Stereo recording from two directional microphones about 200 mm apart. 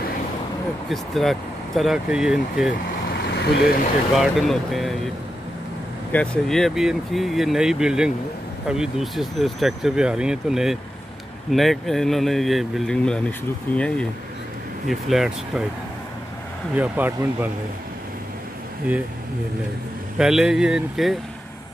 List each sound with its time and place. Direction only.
0.8 s speech: centre (ahead or behind)
3.3 s vehicle: 55° left (ahead or behind)
4.2 s speech: centre (ahead or behind)
6.1 s speech: 5° left (ahead or behind)
16.7 s speech: 10° right (ahead or behind)
20.2 s speech: 5° right (ahead or behind)